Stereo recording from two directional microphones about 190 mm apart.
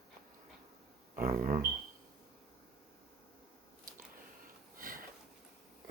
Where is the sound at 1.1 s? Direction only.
45° right (ahead or behind).